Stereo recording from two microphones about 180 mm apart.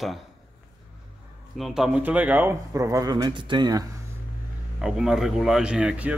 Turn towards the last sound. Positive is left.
turn(degrees=-5)  # may be behind; listen again after turning